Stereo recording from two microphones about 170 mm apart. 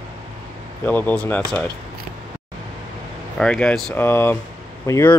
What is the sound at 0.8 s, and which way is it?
Speech, 10° left (ahead or behind).